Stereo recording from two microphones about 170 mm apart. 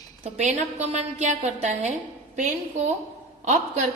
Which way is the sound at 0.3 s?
40° right (ahead or behind).